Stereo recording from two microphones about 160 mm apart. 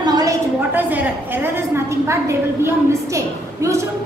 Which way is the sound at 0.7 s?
10° right (ahead or behind).